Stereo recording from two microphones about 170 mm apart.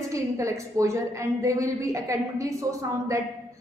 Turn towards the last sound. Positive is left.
turn(degrees=-20)  # may be behind; listen again after turning